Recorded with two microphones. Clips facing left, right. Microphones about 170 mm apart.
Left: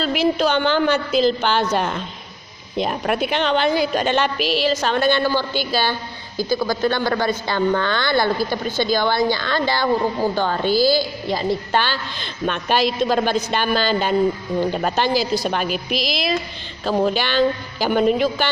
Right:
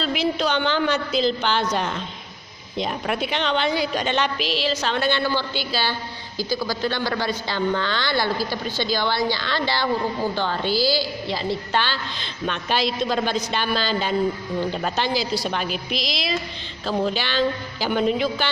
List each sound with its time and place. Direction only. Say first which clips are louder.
0.0 s a woman's voice: left 4 dB; 50° left (ahead or behind)